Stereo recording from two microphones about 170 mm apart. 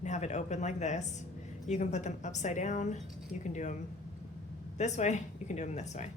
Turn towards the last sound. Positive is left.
turn(degrees=45)  # may be behind; listen again after turning